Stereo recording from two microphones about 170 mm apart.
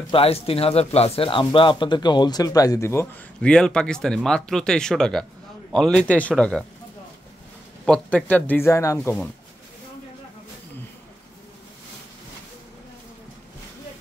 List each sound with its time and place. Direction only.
0.1 s speech: 35° left (ahead or behind); by 3.1 s 15° left (ahead or behind)
3.3 s speech: 5° left (ahead or behind)
7.8 s speech: 5° left (ahead or behind)